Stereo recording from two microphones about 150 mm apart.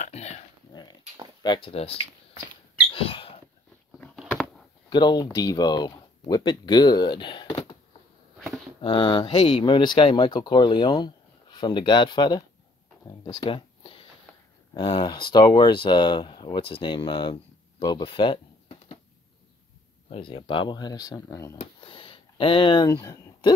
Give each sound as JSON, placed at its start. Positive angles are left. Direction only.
{"t": 0.0, "sound": "a sound", "side_deg": 45}
{"t": 1.4, "sound": "speech", "side_deg": 35}
{"t": 2.9, "sound": "mouse", "side_deg": 35}
{"t": 4.0, "sound": "a sound", "side_deg": 5}
{"t": 4.8, "sound": "speech", "side_deg": 30}
{"t": 8.8, "sound": "speech", "side_deg": 35}
{"t": 13.2, "sound": "a sound", "side_deg": 30}
{"t": 14.7, "sound": "speech", "side_deg": 30}
{"t": 20.1, "sound": "speech", "side_deg": 35}
{"t": 21.5, "sound": "speech", "side_deg": 35}